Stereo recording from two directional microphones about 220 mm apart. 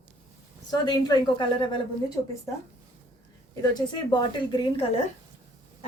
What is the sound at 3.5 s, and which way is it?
A woman's voice, 15° left (ahead or behind).